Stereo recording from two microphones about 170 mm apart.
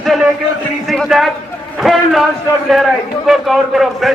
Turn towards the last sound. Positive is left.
turn(degrees=0)  # may be behind; listen again after turning